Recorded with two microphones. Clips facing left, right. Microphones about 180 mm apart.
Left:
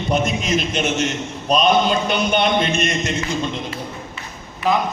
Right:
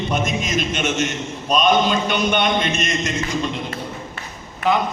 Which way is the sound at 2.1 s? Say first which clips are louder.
Left 1 dB; 35° left (ahead or behind).